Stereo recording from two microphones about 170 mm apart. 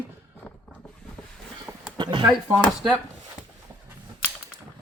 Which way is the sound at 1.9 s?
25° right (ahead or behind).